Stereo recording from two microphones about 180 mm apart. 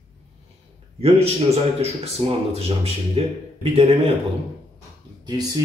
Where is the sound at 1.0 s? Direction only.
35° right (ahead or behind).